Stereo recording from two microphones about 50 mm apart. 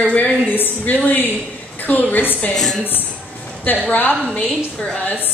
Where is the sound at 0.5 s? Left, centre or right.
Left.